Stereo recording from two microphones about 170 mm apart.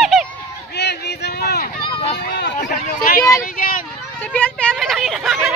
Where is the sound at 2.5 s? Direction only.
55° left (ahead or behind).